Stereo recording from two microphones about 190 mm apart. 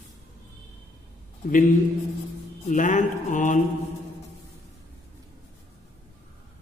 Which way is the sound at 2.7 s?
40° left (ahead or behind).